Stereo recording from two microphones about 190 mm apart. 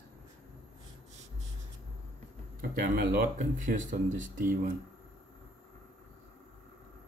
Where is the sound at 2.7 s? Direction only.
45° right (ahead or behind).